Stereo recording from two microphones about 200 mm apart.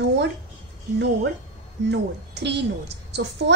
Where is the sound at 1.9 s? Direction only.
60° right (ahead or behind).